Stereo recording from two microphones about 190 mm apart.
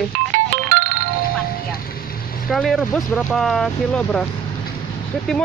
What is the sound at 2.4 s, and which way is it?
Speech, centre (ahead or behind).